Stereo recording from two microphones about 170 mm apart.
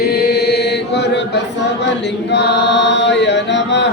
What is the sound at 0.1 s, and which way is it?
Chant, 75° left (ahead or behind).